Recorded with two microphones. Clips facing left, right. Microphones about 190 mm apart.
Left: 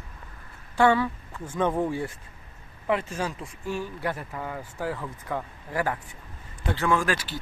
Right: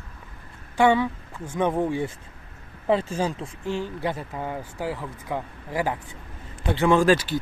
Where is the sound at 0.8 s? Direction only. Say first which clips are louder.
Right 2 dB; 15° right (ahead or behind).